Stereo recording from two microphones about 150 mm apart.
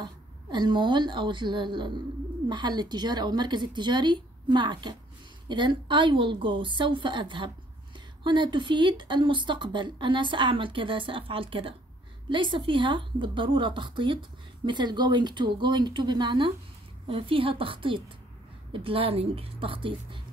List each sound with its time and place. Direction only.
0.0 s a woman's voice: 30° right (ahead or behind)